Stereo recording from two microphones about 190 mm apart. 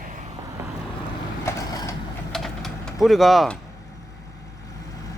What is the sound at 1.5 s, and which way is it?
Mechanisms, 15° left (ahead or behind).